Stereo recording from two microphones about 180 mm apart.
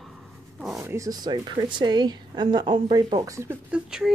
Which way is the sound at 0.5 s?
Centre (ahead or behind).